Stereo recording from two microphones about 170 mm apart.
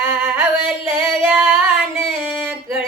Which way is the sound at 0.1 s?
15° right (ahead or behind).